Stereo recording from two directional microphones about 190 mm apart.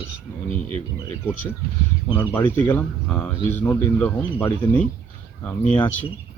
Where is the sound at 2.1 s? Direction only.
15° left (ahead or behind).